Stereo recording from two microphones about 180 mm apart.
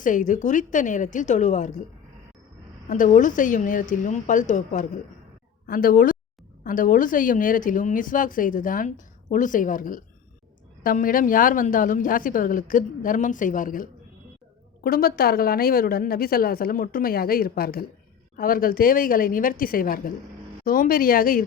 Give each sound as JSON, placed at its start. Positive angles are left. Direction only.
{"t": 0.0, "sound": "a woman's voice", "side_deg": 45}
{"t": 2.9, "sound": "a woman's voice", "side_deg": 45}
{"t": 14.8, "sound": "a woman's voice", "side_deg": 55}